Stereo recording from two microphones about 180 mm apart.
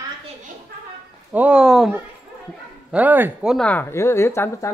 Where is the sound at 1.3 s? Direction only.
5° right (ahead or behind).